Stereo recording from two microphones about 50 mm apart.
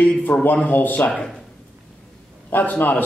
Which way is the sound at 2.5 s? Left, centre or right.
Left.